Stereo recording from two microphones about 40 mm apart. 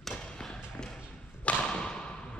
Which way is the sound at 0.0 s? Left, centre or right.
Centre.